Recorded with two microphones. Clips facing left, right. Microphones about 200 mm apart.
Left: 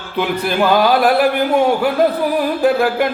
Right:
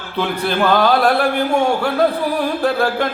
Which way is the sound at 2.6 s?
15° left (ahead or behind).